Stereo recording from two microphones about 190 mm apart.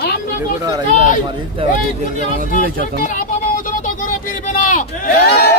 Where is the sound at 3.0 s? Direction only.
40° left (ahead or behind); by 5.5 s 55° left (ahead or behind).